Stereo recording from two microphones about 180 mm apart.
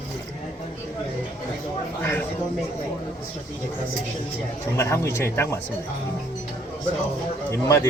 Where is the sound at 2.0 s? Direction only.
10° left (ahead or behind).